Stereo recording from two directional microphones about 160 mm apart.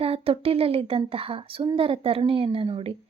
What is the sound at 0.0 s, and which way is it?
Speech, 35° right (ahead or behind).